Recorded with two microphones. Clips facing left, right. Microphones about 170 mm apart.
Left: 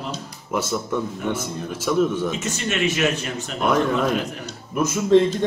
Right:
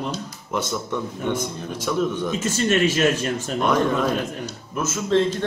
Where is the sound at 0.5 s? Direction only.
5° left (ahead or behind).